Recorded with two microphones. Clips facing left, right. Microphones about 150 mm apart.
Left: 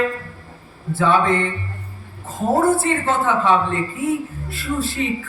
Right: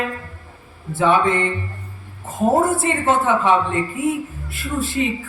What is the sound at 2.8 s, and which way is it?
A woman's voice, 20° right (ahead or behind).